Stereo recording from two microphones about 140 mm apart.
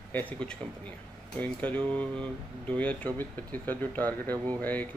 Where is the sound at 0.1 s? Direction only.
10° left (ahead or behind).